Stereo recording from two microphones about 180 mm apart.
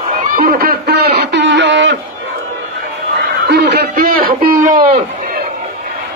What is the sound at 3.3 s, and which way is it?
A man's voice, 65° right (ahead or behind).